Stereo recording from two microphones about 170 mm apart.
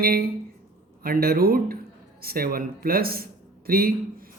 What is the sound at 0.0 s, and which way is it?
A man's voice, 60° right (ahead or behind).